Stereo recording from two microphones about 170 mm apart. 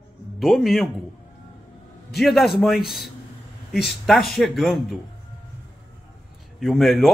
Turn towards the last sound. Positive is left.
turn(degrees=0)  # may be behind; listen again after turning